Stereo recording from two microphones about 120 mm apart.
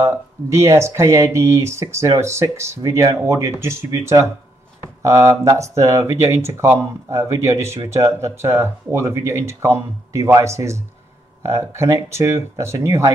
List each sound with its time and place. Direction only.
0.0 s speech: 25° right (ahead or behind)